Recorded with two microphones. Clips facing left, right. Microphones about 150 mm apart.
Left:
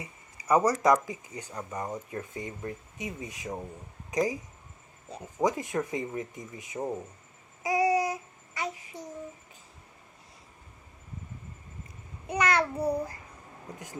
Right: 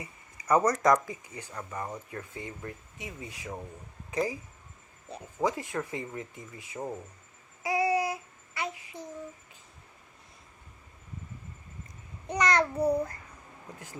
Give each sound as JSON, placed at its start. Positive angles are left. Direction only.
{"t": 0.4, "sound": "speech", "side_deg": 10}
{"t": 5.4, "sound": "speech", "side_deg": 20}
{"t": 7.7, "sound": "a sound", "side_deg": 40}
{"t": 12.3, "sound": "babbling", "side_deg": 10}